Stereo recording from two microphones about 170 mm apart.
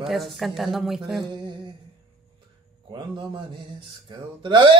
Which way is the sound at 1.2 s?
25° right (ahead or behind).